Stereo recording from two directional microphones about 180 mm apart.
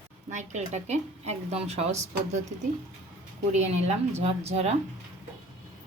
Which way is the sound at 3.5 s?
40° right (ahead or behind).